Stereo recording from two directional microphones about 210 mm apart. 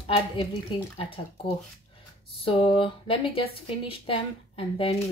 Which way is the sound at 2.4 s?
25° left (ahead or behind).